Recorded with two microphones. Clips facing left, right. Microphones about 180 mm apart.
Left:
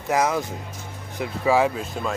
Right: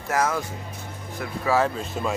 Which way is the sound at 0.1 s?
15° left (ahead or behind).